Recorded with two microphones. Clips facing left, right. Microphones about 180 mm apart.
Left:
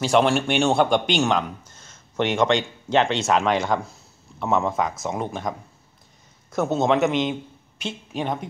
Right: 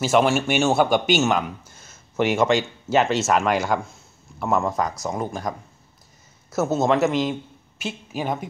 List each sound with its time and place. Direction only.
0.0 s speech: 5° right (ahead or behind)